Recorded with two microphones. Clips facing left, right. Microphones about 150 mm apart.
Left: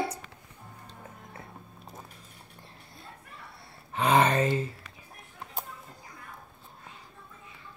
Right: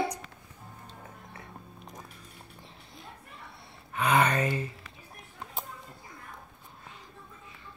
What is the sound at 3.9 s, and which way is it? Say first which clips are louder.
Gasp: left 2 dB; 25° left (ahead or behind).